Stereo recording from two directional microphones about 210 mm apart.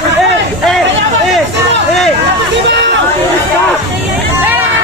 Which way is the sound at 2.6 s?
55° right (ahead or behind).